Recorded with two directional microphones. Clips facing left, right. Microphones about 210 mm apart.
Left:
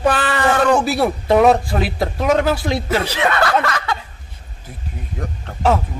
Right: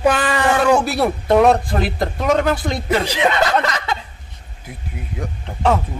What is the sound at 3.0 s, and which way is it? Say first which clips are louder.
Speech: right 1 dB; 15° right (ahead or behind).